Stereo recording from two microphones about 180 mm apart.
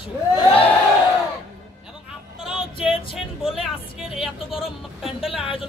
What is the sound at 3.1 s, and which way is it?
Speech, centre (ahead or behind).